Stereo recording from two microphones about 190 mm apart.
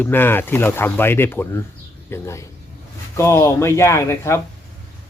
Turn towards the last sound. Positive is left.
turn(degrees=15)  # may be behind; listen again after turning